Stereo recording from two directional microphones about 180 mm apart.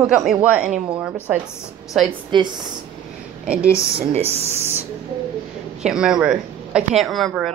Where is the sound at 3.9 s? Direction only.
35° right (ahead or behind).